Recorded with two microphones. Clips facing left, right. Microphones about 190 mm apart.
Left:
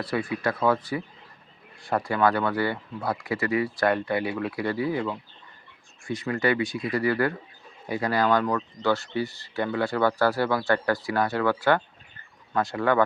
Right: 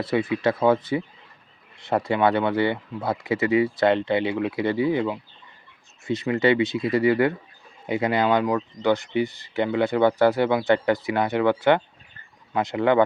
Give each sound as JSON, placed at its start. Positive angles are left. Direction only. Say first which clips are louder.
{"t": 0.0, "sound": "speech", "louder": "right 5 dB", "side_deg": -20}